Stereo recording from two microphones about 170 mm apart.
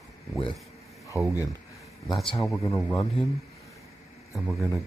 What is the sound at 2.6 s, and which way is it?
Speech, 15° left (ahead or behind).